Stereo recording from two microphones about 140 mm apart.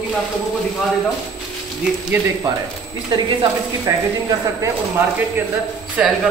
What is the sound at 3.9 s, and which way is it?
Speech, 25° right (ahead or behind).